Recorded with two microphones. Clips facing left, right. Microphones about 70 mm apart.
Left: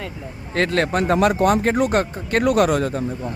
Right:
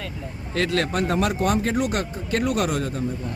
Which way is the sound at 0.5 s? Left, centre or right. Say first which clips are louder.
Left 4 dB; left.